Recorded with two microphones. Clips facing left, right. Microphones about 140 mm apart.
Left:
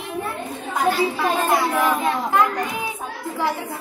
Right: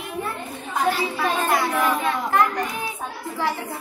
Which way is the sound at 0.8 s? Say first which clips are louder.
Left 4 dB; 20° left (ahead or behind).